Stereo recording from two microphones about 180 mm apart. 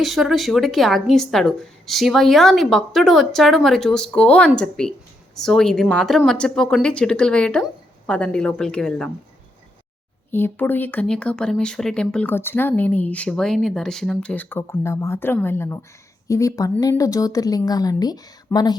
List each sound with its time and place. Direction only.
0.0 s a woman's voice: centre (ahead or behind)
10.3 s speech: 10° left (ahead or behind)